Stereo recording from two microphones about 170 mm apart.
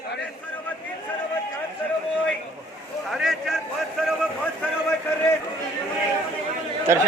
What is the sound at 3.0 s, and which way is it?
Speech, centre (ahead or behind).